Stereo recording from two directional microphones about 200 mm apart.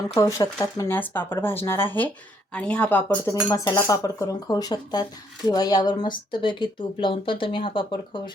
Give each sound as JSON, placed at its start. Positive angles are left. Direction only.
{"t": 0.2, "sound": "speech", "side_deg": 15}